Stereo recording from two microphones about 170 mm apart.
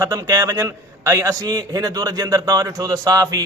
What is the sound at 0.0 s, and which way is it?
A man's voice, 20° right (ahead or behind).